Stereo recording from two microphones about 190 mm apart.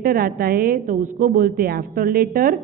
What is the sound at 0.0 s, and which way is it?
A woman's voice, 50° right (ahead or behind).